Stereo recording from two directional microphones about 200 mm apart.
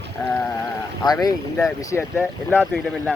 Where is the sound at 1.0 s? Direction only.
20° left (ahead or behind).